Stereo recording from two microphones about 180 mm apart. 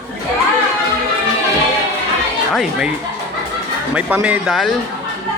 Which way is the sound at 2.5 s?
5° right (ahead or behind).